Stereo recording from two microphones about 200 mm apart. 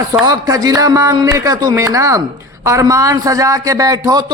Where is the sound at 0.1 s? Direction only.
20° right (ahead or behind).